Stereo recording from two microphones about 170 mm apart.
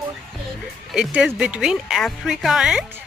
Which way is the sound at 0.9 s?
5° right (ahead or behind).